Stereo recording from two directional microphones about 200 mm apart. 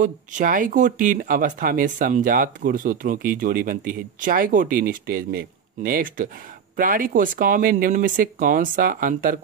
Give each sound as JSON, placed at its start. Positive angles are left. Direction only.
{"t": 0.0, "sound": "speech", "side_deg": -40}